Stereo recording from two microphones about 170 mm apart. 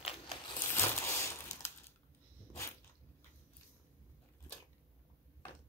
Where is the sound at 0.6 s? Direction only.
15° left (ahead or behind).